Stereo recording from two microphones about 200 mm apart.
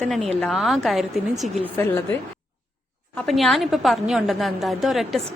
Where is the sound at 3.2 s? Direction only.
Centre (ahead or behind).